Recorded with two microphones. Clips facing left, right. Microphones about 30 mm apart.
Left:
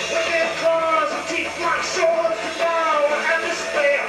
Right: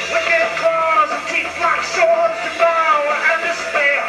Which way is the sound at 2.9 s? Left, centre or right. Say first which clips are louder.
Right 3 dB; centre.